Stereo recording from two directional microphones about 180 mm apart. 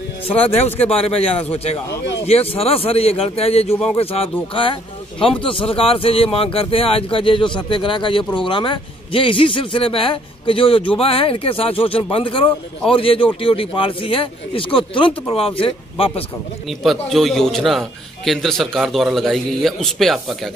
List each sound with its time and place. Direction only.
0.4 s a man's voice: 35° left (ahead or behind)
16.6 s a man's voice: centre (ahead or behind)